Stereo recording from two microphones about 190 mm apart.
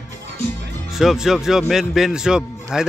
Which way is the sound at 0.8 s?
Centre (ahead or behind).